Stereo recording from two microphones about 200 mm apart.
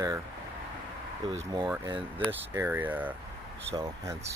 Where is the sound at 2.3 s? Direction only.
10° right (ahead or behind).